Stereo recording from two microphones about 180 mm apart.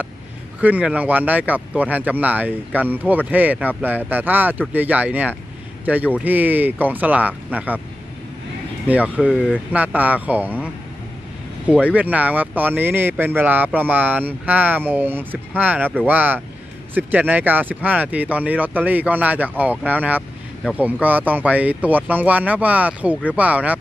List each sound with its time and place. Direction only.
0.6 s speech: 10° right (ahead or behind)
8.8 s speech: 10° right (ahead or behind)